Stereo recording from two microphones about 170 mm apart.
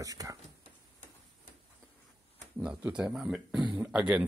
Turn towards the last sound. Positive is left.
turn(degrees=-5)  # may be behind; listen again after turning